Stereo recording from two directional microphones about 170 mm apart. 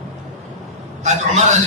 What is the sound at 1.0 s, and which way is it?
Speech, 45° right (ahead or behind).